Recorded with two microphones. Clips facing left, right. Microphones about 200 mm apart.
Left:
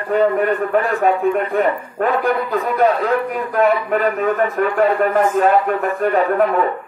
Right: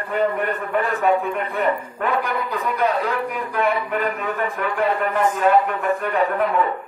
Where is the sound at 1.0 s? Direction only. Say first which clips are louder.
Left 4 dB; 40° left (ahead or behind).